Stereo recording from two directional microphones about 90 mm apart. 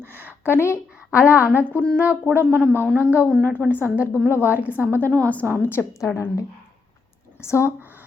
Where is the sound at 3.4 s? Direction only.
20° left (ahead or behind).